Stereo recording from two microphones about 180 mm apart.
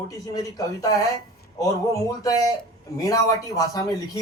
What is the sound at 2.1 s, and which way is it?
A man's voice, 20° left (ahead or behind).